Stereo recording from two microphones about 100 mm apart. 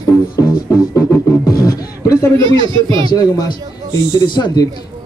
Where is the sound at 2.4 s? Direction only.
50° right (ahead or behind).